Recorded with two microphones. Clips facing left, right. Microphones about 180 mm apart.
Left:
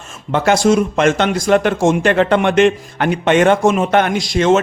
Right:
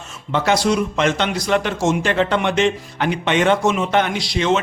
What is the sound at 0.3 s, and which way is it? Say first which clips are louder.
Speech: left 5 dB; 50° left (ahead or behind).